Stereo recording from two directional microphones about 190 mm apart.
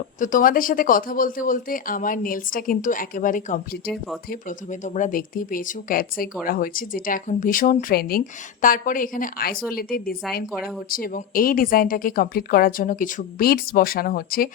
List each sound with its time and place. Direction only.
0.2 s speech: 45° left (ahead or behind)